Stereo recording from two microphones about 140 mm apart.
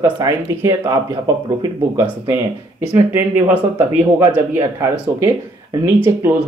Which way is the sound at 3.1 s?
15° right (ahead or behind).